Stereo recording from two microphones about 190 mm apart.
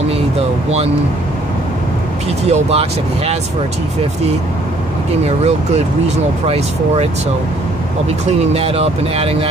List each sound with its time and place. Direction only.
2.4 s speech: 35° right (ahead or behind)
5.2 s speech: 35° right (ahead or behind)
8.5 s speech: 30° right (ahead or behind)